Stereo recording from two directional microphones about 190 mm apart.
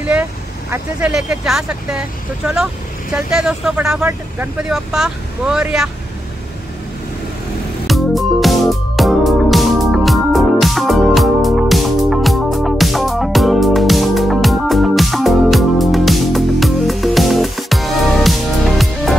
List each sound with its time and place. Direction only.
0.7 s speech: 5° right (ahead or behind)
7.8 s music: centre (ahead or behind)